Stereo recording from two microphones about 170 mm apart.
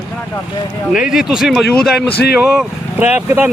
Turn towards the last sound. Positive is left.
turn(degrees=-10)  # may be behind; listen again after turning